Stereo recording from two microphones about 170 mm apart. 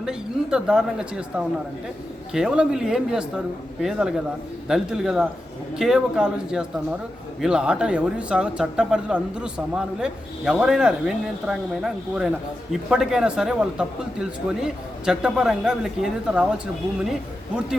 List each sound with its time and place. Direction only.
0.0 s speech: 5° right (ahead or behind)